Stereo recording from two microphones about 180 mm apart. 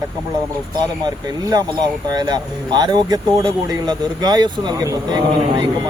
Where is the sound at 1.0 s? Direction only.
20° right (ahead or behind).